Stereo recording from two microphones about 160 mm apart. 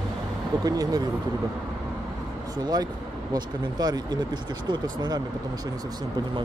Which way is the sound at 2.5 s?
25° right (ahead or behind).